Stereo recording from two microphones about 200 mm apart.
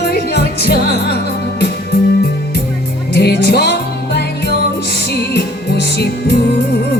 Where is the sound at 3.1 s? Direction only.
55° left (ahead or behind).